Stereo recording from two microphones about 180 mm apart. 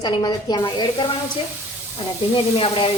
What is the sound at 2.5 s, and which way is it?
Speech, 30° left (ahead or behind).